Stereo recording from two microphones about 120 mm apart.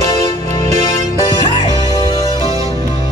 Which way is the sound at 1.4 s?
35° left (ahead or behind).